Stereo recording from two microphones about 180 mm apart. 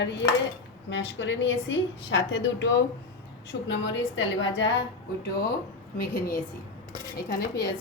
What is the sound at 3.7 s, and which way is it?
A woman's voice, 90° left.